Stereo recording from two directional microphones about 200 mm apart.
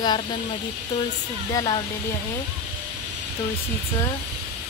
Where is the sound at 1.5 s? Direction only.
20° left (ahead or behind).